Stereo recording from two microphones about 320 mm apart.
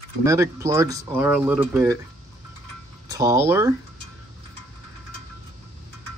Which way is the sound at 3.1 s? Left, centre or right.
Centre.